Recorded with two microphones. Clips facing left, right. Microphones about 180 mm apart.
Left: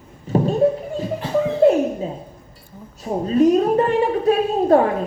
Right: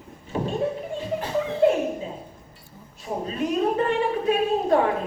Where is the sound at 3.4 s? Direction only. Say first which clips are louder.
Left 9 dB; 40° left (ahead or behind).